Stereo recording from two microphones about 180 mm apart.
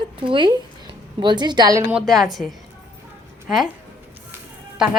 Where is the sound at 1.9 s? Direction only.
Centre (ahead or behind).